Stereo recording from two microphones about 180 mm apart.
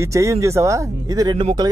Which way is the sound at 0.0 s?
15° right (ahead or behind).